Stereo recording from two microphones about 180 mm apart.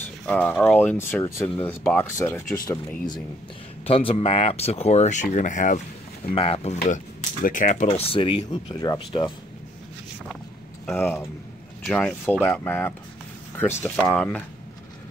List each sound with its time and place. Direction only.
0.3 s speech: 5° left (ahead or behind)
3.8 s speech: 30° left (ahead or behind)
6.3 s speech: 35° left (ahead or behind)
7.4 s speech: 45° left (ahead or behind); by 9.3 s 25° left (ahead or behind)
10.9 s speech: 10° left (ahead or behind)